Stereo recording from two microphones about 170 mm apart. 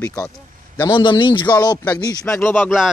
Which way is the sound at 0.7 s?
25° left (ahead or behind).